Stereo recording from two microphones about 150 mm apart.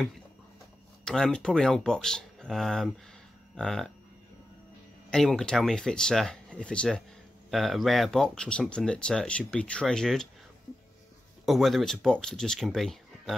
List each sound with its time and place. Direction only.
1.0 s speech: 5° left (ahead or behind)
5.1 s speech: 5° left (ahead or behind)
11.4 s speech: centre (ahead or behind)